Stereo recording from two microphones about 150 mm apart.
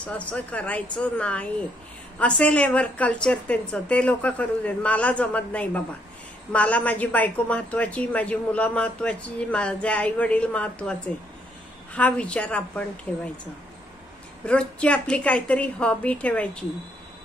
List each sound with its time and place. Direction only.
0.0 s a man's voice: 10° left (ahead or behind)
14.4 s a man's voice: 5° left (ahead or behind)